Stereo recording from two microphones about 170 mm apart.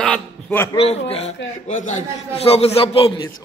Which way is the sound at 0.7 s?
35° left (ahead or behind).